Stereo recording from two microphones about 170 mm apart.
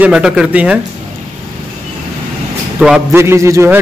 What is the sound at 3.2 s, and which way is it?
Speech, 15° right (ahead or behind).